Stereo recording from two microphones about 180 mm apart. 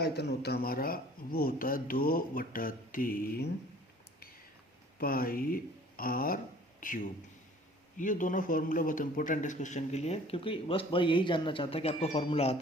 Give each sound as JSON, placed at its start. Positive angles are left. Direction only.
{"t": 0.0, "sound": "speech", "side_deg": 65}
{"t": 4.9, "sound": "a man's voice", "side_deg": 55}